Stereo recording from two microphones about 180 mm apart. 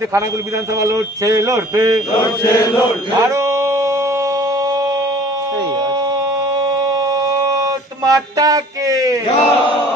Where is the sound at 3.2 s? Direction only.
15° right (ahead or behind).